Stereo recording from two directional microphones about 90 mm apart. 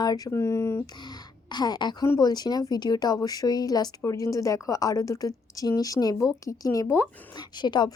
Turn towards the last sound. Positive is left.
turn(degrees=55)  # may be behind; listen again after turning